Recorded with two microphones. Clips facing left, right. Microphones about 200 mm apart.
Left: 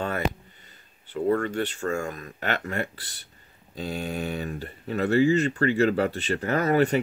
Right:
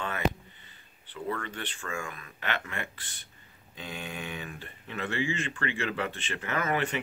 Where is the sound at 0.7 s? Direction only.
45° left (ahead or behind).